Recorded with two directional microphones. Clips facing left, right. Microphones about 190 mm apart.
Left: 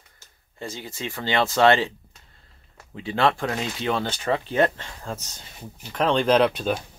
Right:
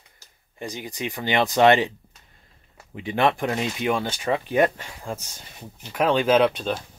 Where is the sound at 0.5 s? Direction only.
15° right (ahead or behind).